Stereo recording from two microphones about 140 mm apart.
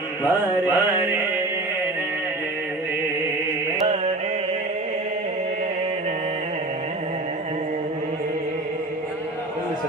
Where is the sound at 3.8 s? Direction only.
55° right (ahead or behind).